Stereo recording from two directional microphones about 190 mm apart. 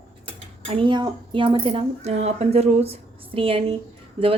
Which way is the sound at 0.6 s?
30° right (ahead or behind).